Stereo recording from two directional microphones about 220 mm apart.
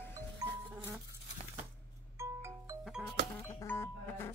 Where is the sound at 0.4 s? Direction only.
15° right (ahead or behind).